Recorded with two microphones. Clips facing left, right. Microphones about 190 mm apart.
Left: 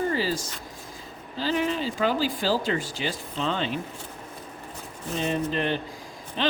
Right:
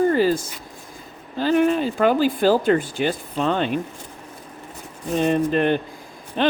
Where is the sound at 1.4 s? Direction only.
55° right (ahead or behind).